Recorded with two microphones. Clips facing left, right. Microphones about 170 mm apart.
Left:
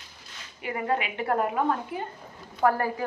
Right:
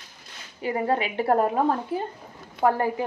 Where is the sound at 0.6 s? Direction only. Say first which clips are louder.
Right 4 dB; 35° right (ahead or behind).